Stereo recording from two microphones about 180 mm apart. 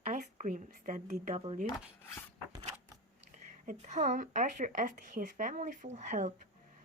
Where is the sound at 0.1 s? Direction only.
45° right (ahead or behind).